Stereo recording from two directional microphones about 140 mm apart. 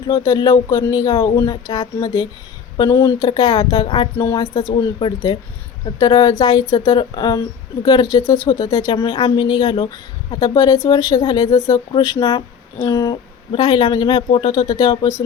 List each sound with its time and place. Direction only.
0.1 s speech: 25° left (ahead or behind)
3.8 s a woman's voice: 40° left (ahead or behind)
14.2 s speech: 45° left (ahead or behind)
14.7 s speech: 25° left (ahead or behind)